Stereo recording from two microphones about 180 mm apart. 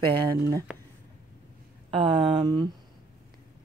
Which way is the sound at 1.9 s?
30° right (ahead or behind).